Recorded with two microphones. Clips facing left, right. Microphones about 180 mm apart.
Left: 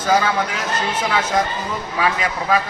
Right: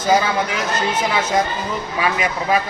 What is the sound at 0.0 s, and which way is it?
A man's voice, 10° right (ahead or behind).